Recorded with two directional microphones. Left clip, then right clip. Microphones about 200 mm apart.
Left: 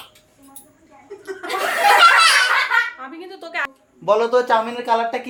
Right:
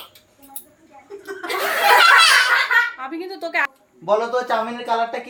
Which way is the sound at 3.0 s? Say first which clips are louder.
Right 5 dB; 45° right (ahead or behind).